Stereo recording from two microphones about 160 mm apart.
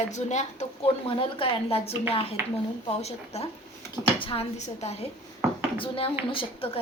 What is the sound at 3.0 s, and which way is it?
A woman's voice, 40° left (ahead or behind).